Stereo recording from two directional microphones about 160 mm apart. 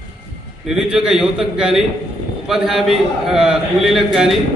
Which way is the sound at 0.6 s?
5° right (ahead or behind).